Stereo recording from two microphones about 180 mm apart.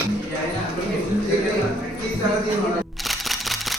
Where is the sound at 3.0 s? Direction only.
Centre (ahead or behind).